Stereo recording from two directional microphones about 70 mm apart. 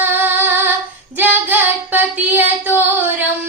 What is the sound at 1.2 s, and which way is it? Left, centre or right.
Female singing, right.